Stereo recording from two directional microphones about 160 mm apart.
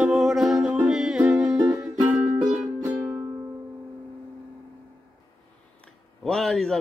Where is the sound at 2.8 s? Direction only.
20° right (ahead or behind).